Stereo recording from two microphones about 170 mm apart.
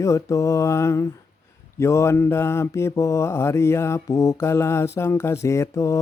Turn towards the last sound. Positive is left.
turn(degrees=15)  # may be behind; listen again after turning